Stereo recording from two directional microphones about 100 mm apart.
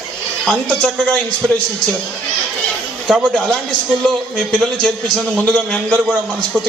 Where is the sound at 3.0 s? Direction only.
10° right (ahead or behind).